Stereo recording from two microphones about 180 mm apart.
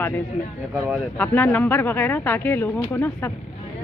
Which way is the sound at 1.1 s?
10° left (ahead or behind).